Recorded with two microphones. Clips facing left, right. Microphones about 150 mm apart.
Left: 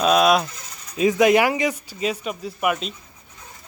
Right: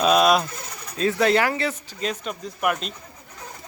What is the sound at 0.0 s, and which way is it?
Pigeon, centre (ahead or behind).